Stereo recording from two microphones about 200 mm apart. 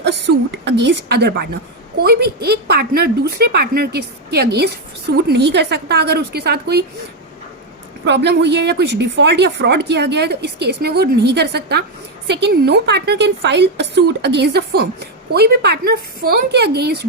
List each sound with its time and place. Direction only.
0.3 s a woman's voice: 65° right (ahead or behind)
8.0 s a woman's voice: 60° right (ahead or behind)